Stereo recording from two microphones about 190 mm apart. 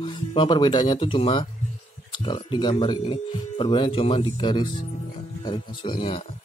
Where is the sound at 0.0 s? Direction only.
25° left (ahead or behind).